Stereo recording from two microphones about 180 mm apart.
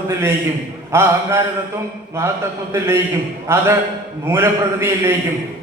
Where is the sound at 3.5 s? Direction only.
15° right (ahead or behind).